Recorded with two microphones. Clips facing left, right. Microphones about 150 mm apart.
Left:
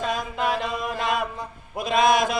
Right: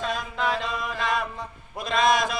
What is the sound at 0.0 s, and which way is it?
A capella, 10° left (ahead or behind).